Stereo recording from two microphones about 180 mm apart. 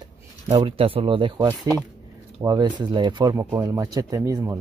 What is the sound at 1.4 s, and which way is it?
Speech, 10° right (ahead or behind).